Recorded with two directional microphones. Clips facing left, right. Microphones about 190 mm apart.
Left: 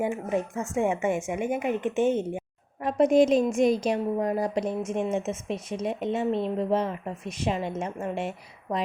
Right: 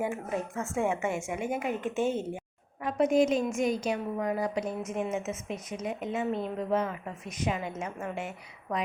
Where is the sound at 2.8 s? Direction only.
35° left (ahead or behind).